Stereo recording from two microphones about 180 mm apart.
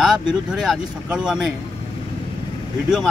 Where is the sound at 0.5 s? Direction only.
5° right (ahead or behind).